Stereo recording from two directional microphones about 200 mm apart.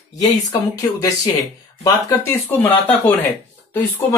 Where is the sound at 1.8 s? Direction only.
15° left (ahead or behind).